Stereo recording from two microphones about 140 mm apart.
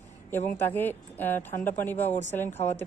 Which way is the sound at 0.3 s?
15° left (ahead or behind).